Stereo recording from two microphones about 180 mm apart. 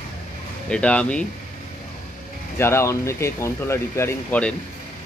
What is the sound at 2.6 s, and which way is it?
Speech, 15° left (ahead or behind).